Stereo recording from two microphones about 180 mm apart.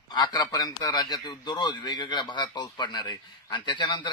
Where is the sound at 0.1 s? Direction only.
25° left (ahead or behind).